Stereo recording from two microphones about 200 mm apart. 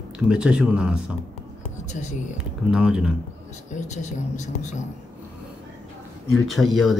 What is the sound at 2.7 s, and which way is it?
Speech, 5° right (ahead or behind).